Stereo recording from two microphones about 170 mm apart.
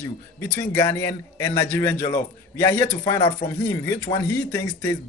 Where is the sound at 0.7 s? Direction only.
15° left (ahead or behind).